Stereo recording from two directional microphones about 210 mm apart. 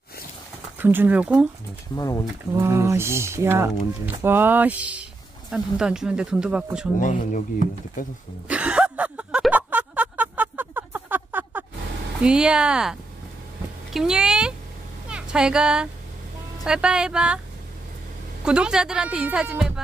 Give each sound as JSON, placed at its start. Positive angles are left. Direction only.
{"t": 0.7, "sound": "speech", "side_deg": -10}
{"t": 2.0, "sound": "speech", "side_deg": 15}
{"t": 2.5, "sound": "speech", "side_deg": -15}
{"t": 7.0, "sound": "speech", "side_deg": 35}
{"t": 8.5, "sound": "a sound", "side_deg": -5}
{"t": 12.2, "sound": "speech", "side_deg": -5}
{"t": 13.9, "sound": "speech", "side_deg": -5}
{"t": 18.4, "sound": "speech", "side_deg": -5}